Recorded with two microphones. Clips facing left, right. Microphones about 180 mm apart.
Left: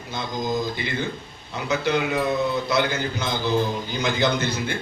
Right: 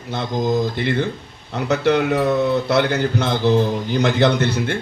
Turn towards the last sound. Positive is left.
turn(degrees=-75)  # may be behind; listen again after turning